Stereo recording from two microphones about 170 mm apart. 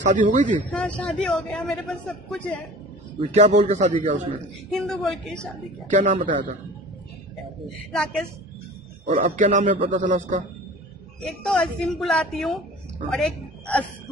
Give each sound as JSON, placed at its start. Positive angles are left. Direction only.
{"t": 0.1, "sound": "a man's voice", "side_deg": -50}
{"t": 0.7, "sound": "a man's voice", "side_deg": 5}
{"t": 3.2, "sound": "a man's voice", "side_deg": -45}
{"t": 4.6, "sound": "a man's voice", "side_deg": 0}
{"t": 5.9, "sound": "a man's voice", "side_deg": -45}
{"t": 7.9, "sound": "a man's voice", "side_deg": 5}
{"t": 9.0, "sound": "a man's voice", "side_deg": -55}
{"t": 11.2, "sound": "a man's voice", "side_deg": 5}